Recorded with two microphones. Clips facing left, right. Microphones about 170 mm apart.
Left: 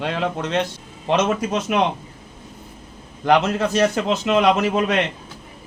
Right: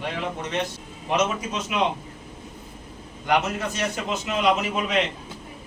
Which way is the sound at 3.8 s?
70° left (ahead or behind).